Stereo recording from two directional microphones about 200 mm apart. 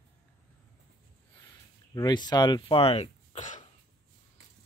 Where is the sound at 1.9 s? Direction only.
20° left (ahead or behind); by 3.7 s 35° left (ahead or behind).